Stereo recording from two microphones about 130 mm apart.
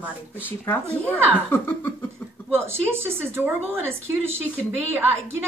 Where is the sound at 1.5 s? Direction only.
15° left (ahead or behind).